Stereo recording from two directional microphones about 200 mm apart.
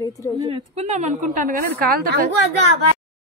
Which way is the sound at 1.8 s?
50° right (ahead or behind).